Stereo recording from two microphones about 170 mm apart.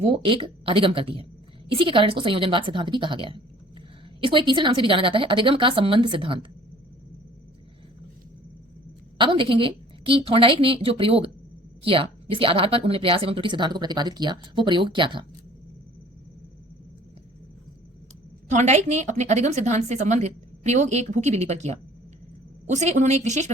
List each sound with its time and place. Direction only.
0.0 s a woman's voice: 30° right (ahead or behind)
9.1 s a woman's voice: 30° right (ahead or behind)
18.5 s a woman's voice: 40° right (ahead or behind)